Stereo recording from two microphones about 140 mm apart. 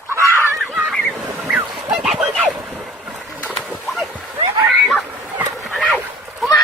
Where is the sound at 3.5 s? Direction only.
Centre (ahead or behind).